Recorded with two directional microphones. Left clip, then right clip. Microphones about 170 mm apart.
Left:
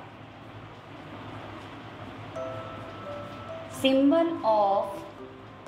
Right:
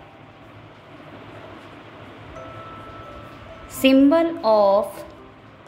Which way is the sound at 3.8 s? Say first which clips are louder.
Right 7 dB; 70° right (ahead or behind).